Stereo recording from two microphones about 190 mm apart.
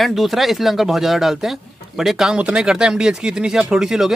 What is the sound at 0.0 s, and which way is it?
Speech, centre (ahead or behind).